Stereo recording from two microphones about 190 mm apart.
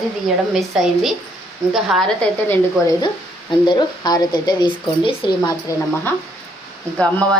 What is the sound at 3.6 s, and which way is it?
Speech, 25° left (ahead or behind).